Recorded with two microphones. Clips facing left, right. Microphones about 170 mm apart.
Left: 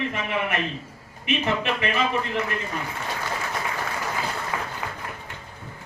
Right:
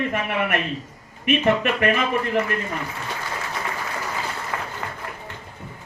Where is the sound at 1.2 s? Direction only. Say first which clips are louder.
Right 5 dB; 55° right (ahead or behind).